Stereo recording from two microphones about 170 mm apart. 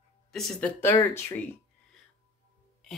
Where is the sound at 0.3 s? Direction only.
Centre (ahead or behind).